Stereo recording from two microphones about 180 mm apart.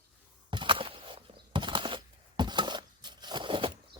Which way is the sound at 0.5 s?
25° right (ahead or behind).